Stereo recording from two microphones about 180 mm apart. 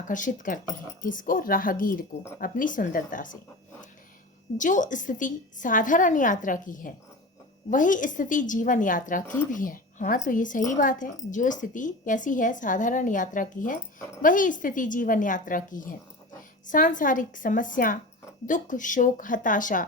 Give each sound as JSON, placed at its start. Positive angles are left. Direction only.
{"t": 0.1, "sound": "a woman's voice", "side_deg": 45}
{"t": 4.5, "sound": "a woman's voice", "side_deg": 45}